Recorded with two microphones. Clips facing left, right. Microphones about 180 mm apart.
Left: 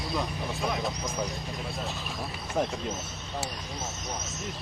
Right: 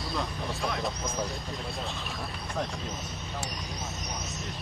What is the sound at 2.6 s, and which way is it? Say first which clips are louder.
Speech: left 5 dB; 20° left (ahead or behind).